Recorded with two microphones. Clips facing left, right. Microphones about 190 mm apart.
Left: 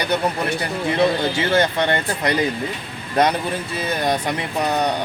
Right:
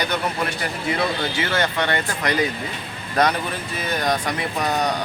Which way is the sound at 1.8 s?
20° left (ahead or behind).